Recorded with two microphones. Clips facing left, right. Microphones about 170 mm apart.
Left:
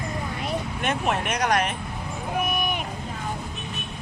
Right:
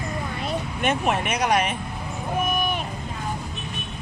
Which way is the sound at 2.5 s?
15° left (ahead or behind).